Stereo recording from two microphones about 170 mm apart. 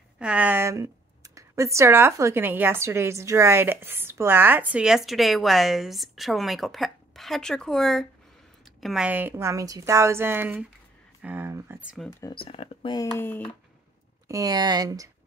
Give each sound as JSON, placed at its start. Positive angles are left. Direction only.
{"t": 0.2, "sound": "speech", "side_deg": -10}
{"t": 12.2, "sound": "speech", "side_deg": 25}
{"t": 13.0, "sound": "speech", "side_deg": 15}
{"t": 14.2, "sound": "speech", "side_deg": -20}